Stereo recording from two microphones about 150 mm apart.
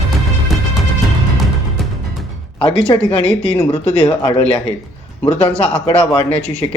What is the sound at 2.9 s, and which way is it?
Speech, 30° left (ahead or behind).